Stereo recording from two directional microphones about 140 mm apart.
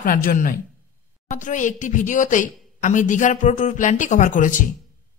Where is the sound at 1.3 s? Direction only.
65° left (ahead or behind).